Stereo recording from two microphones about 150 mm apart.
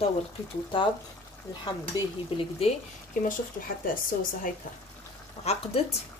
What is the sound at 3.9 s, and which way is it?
Speech, 65° left (ahead or behind).